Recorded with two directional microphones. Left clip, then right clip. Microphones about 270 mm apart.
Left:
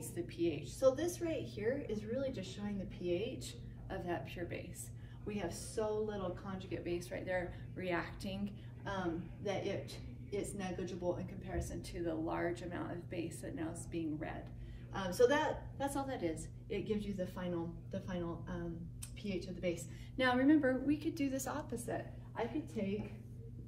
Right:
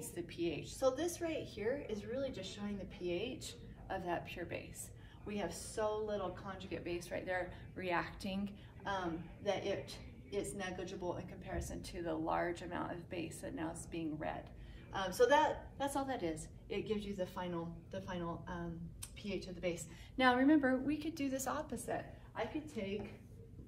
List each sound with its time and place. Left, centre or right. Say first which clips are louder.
0.1 s a woman's voice: left 3 dB; centre